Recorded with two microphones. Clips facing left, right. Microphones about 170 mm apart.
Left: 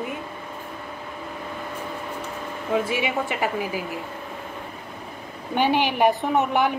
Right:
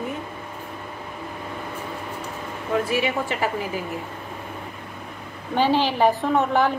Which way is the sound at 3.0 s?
10° left (ahead or behind).